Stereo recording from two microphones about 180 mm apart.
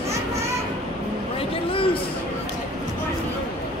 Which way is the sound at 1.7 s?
30° left (ahead or behind).